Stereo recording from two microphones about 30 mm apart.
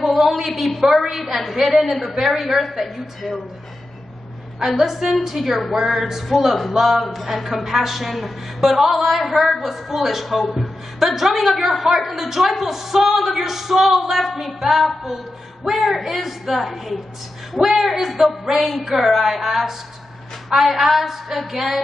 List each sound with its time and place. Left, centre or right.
0.0 s a sound: centre
0.5 s a man's voice: centre
4.6 s a man's voice: centre
7.0 s a man's voice: centre